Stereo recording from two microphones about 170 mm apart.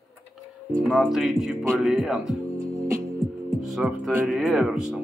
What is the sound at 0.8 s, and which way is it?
Speech, centre (ahead or behind).